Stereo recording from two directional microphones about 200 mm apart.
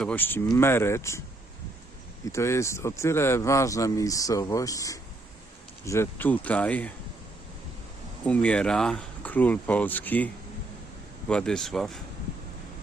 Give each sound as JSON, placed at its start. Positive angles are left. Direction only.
{"t": 0.0, "sound": "speech", "side_deg": 10}
{"t": 2.2, "sound": "speech", "side_deg": 15}
{"t": 8.3, "sound": "speech", "side_deg": 5}
{"t": 11.3, "sound": "speech", "side_deg": 5}